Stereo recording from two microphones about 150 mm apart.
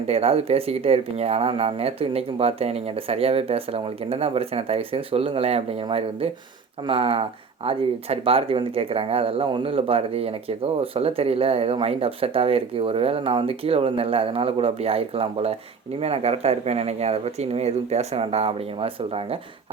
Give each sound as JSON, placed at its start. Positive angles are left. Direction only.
{"t": 0.1, "sound": "speech", "side_deg": -40}